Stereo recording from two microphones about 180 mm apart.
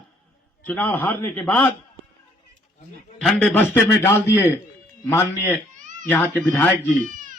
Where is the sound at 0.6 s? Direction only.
10° left (ahead or behind).